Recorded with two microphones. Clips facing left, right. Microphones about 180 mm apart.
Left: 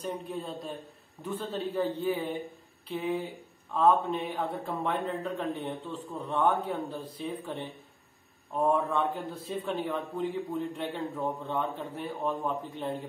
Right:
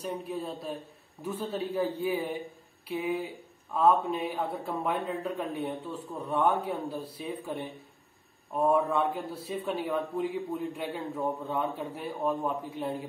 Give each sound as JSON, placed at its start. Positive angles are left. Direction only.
{"t": 0.0, "sound": "a man's voice", "side_deg": -5}